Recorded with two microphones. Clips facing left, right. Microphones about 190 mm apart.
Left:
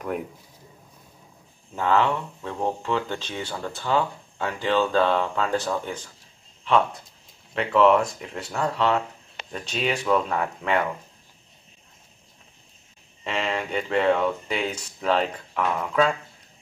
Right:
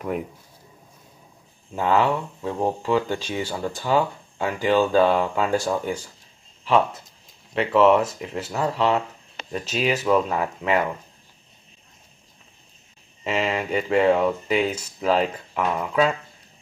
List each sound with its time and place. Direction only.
0.0 s speech: 5° right (ahead or behind)
1.8 s speech: 10° right (ahead or behind)
13.2 s speech: 5° right (ahead or behind)